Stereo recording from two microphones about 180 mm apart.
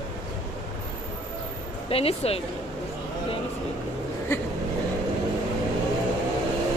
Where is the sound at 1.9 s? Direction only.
35° left (ahead or behind).